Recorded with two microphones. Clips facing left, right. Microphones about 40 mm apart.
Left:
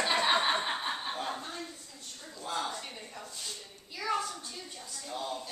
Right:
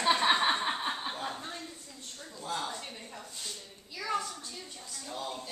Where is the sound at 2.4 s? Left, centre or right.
Centre.